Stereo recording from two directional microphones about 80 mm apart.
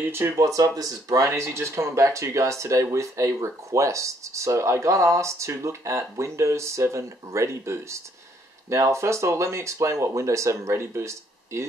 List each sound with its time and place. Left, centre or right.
0.0 s speech: right
0.4 s speech: right